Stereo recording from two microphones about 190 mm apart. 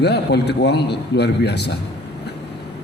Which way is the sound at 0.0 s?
60° left (ahead or behind).